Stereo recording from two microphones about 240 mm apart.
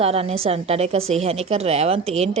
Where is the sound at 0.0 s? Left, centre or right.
Right.